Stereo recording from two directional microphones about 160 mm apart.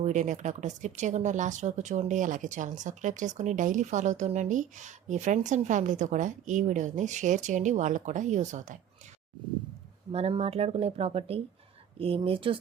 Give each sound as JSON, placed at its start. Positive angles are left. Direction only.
{"t": 0.0, "sound": "speech", "side_deg": -50}
{"t": 10.1, "sound": "speech", "side_deg": -40}